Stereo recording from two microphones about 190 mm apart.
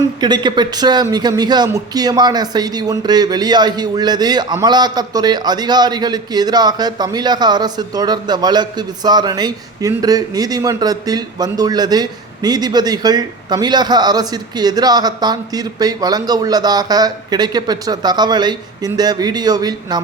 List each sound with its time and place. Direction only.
0.2 s speech: 20° right (ahead or behind)